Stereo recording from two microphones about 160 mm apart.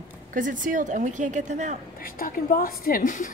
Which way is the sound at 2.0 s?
60° left (ahead or behind).